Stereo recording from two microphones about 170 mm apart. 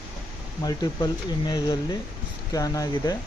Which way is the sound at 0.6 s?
20° left (ahead or behind).